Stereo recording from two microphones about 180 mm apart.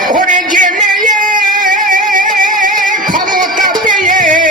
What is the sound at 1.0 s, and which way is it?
Singing, 45° right (ahead or behind).